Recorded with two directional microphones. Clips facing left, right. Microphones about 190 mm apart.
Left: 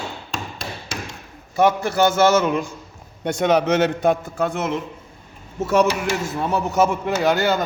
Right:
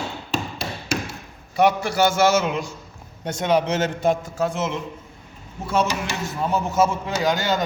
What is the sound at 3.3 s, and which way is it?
A man's voice, 65° left (ahead or behind).